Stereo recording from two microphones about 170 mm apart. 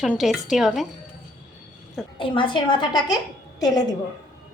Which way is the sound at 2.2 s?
30° left (ahead or behind).